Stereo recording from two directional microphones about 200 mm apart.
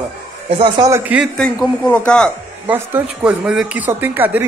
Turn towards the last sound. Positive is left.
turn(degrees=-10)  # may be behind; listen again after turning